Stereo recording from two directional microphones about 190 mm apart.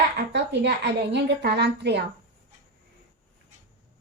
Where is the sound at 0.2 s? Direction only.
60° right (ahead or behind).